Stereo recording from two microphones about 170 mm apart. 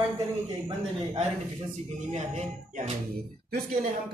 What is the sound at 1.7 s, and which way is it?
Speech, 40° right (ahead or behind).